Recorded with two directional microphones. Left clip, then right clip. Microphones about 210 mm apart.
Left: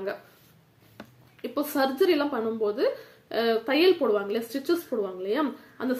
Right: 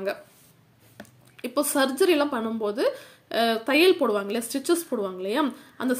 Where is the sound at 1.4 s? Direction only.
30° right (ahead or behind).